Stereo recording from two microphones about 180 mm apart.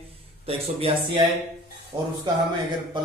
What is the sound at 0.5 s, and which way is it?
Speech, 30° right (ahead or behind).